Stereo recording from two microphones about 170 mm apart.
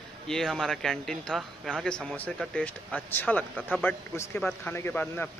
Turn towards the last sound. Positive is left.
turn(degrees=10)  # may be behind; listen again after turning